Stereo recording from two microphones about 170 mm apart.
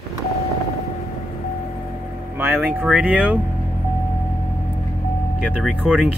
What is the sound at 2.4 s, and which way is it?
Speech, 10° right (ahead or behind).